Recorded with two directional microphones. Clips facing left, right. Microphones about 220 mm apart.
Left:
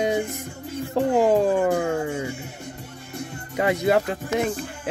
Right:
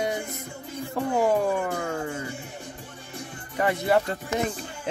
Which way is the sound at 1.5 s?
20° left (ahead or behind).